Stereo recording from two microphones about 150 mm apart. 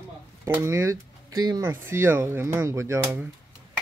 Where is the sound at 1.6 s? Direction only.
15° right (ahead or behind).